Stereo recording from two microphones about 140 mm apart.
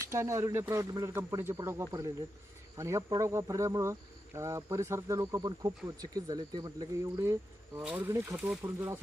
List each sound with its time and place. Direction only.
0.1 s speech: 20° right (ahead or behind)
7.8 s speech: 10° right (ahead or behind)
8.1 s speech: 20° right (ahead or behind)
8.4 s speech: 10° right (ahead or behind)